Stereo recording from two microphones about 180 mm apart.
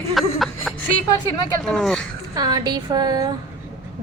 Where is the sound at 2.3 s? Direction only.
20° right (ahead or behind).